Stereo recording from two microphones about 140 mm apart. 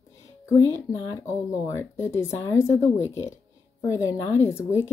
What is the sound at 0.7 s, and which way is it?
Speech, 20° left (ahead or behind).